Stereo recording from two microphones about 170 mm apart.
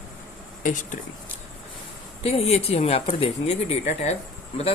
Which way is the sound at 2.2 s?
35° left (ahead or behind).